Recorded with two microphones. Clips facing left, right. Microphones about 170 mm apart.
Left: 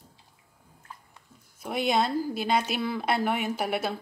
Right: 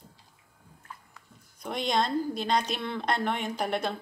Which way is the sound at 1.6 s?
5° left (ahead or behind).